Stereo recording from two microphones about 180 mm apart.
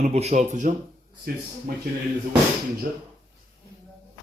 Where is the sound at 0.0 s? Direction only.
35° right (ahead or behind).